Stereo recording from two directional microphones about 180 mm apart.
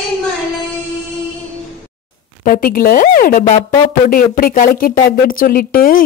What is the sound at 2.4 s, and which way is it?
Speech, 50° left (ahead or behind).